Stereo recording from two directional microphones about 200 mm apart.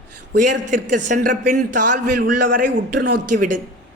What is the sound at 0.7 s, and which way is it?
A man's voice, 40° right (ahead or behind).